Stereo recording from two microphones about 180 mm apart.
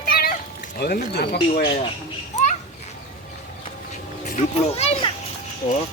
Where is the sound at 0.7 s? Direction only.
60° left (ahead or behind).